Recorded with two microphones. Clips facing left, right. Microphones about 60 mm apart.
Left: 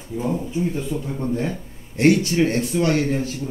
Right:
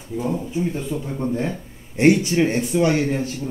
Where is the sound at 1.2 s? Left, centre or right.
Centre.